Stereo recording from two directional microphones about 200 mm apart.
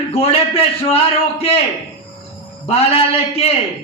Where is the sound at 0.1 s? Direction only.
30° left (ahead or behind).